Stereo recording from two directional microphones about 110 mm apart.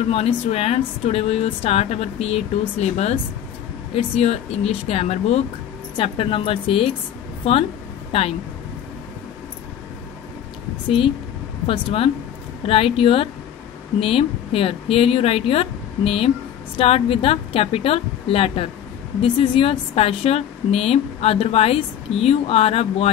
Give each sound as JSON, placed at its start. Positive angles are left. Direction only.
{"t": 0.1, "sound": "speech", "side_deg": 65}
{"t": 3.9, "sound": "speech", "side_deg": 70}
{"t": 5.9, "sound": "a woman's voice", "side_deg": 55}
{"t": 11.6, "sound": "a woman's voice", "side_deg": 55}